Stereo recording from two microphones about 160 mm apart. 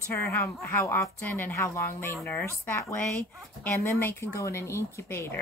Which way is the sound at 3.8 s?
15° left (ahead or behind).